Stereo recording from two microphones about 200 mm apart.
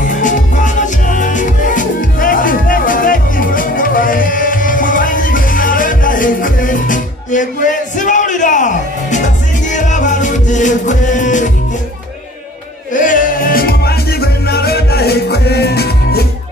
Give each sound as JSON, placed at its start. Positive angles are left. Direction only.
{"t": 0.0, "sound": "music", "side_deg": 40}
{"t": 12.9, "sound": "music", "side_deg": 40}